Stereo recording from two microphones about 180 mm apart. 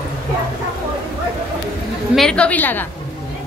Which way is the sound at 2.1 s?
5° left (ahead or behind).